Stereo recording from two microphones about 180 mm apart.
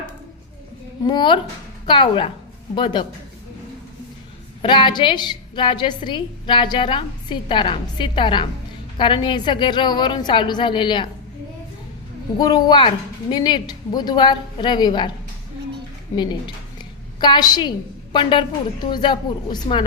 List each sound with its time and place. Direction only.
1.0 s a woman's voice: 25° left (ahead or behind)
4.6 s a woman's voice: 25° left (ahead or behind)
12.4 s a woman's voice: 25° left (ahead or behind)
16.1 s a woman's voice: 25° left (ahead or behind)